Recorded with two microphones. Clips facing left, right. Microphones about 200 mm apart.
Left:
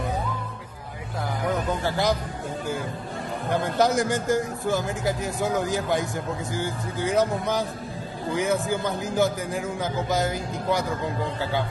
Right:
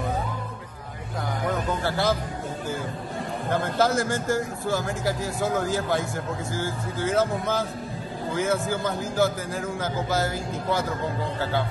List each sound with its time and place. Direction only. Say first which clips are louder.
1.8 s a man's voice: even; 15° left (ahead or behind)
3.5 s a man's voice: left 1 dB; 15° left (ahead or behind)